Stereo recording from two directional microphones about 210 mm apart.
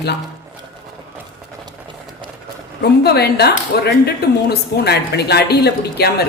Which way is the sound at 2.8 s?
50° left (ahead or behind).